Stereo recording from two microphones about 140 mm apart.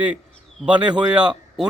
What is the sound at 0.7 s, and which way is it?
Speech, 35° right (ahead or behind).